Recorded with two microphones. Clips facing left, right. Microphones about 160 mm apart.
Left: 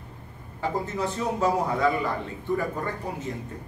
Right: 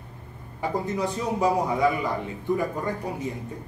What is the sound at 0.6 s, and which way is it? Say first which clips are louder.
A man's voice: right 1 dB; 15° right (ahead or behind).